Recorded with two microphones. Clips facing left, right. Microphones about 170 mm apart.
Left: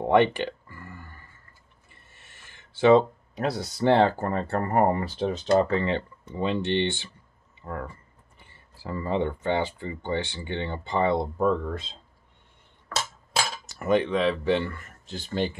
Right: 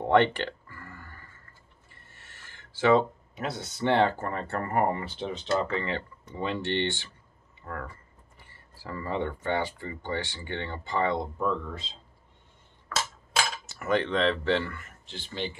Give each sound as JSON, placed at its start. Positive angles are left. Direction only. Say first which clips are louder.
{"t": 0.0, "sound": "a sound", "louder": "left 2 dB", "side_deg": 15}
{"t": 2.8, "sound": "speech", "louder": "left 4 dB", "side_deg": 35}
{"t": 11.1, "sound": "speech", "louder": "left 5 dB", "side_deg": 45}
{"t": 13.8, "sound": "speech", "louder": "left 3 dB", "side_deg": 15}
{"t": 14.7, "sound": "speech", "louder": "left 4 dB", "side_deg": 45}